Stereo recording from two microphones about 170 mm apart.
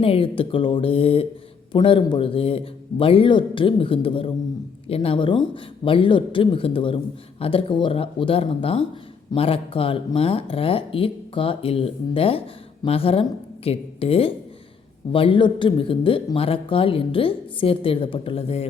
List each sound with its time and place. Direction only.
0.0 s speech: 35° left (ahead or behind)